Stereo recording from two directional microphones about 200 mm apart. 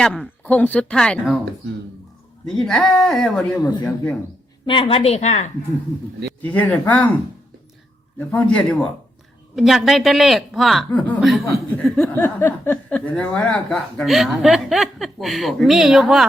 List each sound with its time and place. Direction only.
0.0 s speech: 5° left (ahead or behind)
2.6 s speech: 5° left (ahead or behind)
3.5 s speech: 15° left (ahead or behind)
4.6 s a woman's voice: 25° left (ahead or behind)
6.4 s speech: 5° left (ahead or behind)
8.3 s speech: 5° left (ahead or behind)